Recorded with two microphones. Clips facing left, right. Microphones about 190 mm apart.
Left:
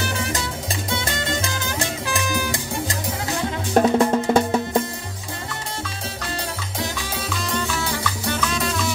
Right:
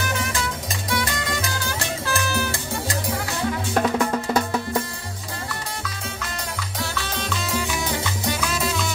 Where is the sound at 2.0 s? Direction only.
15° left (ahead or behind).